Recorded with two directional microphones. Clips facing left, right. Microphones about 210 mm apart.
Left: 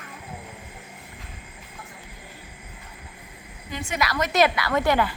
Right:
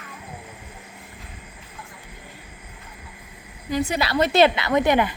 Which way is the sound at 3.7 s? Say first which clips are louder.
Right 5 dB; 40° right (ahead or behind).